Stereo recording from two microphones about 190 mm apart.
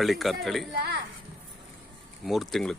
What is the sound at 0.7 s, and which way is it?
Speech, 60° right (ahead or behind).